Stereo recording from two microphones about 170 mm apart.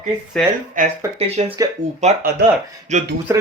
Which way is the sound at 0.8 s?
50° right (ahead or behind).